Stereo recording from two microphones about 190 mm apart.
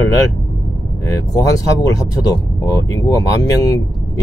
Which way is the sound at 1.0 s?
20° left (ahead or behind).